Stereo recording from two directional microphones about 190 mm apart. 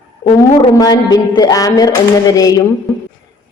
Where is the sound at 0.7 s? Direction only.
25° left (ahead or behind).